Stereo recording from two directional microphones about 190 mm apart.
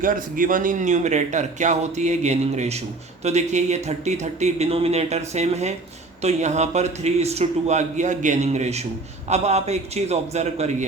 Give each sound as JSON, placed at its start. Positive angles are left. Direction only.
{"t": 0.0, "sound": "speech", "side_deg": -45}